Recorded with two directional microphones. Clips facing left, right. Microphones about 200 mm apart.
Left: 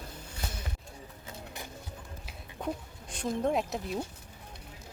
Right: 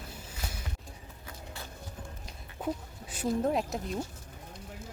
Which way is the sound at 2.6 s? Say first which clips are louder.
Right 1 dB; 5° right (ahead or behind).